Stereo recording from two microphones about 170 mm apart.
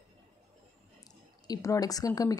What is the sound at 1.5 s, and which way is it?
Speech, 20° left (ahead or behind).